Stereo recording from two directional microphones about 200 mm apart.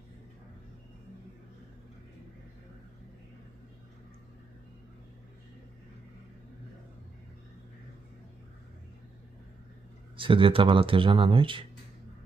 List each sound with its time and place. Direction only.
10.1 s speech: 25° right (ahead or behind)